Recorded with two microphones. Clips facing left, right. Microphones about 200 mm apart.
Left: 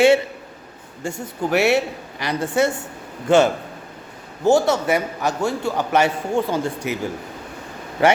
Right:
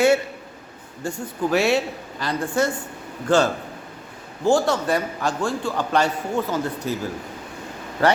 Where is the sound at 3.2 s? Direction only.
20° left (ahead or behind).